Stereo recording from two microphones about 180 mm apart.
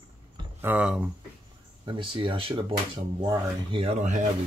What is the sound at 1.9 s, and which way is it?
Speech, 30° right (ahead or behind).